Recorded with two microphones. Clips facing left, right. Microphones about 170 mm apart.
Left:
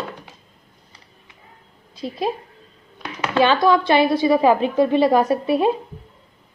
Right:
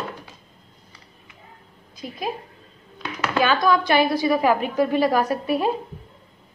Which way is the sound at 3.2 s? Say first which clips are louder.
Left 4 dB; 25° left (ahead or behind).